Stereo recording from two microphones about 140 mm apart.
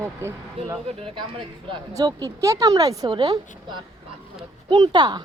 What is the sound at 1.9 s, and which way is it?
A woman's voice, 25° right (ahead or behind).